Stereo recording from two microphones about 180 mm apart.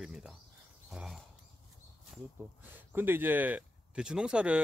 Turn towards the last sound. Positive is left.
turn(degrees=-5)  # may be behind; listen again after turning